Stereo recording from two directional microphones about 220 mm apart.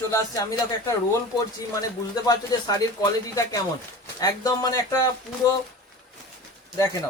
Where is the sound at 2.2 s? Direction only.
15° left (ahead or behind).